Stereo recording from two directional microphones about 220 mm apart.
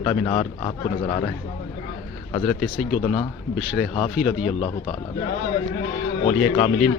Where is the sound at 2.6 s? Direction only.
Centre (ahead or behind).